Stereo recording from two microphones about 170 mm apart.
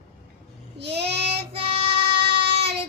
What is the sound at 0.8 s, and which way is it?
Child singing, 80° right.